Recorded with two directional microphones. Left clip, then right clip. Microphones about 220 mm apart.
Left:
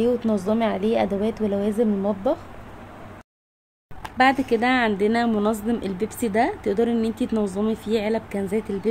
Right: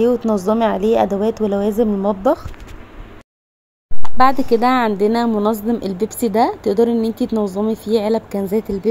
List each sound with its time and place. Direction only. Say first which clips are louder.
0.0 s speech: right 6 dB; 20° right (ahead or behind)
4.0 s speech: right 5 dB; 20° right (ahead or behind)